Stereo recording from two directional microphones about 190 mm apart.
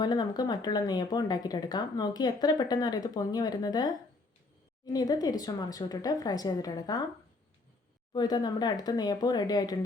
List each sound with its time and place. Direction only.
0.0 s speech: 25° left (ahead or behind)
8.1 s speech: 20° left (ahead or behind)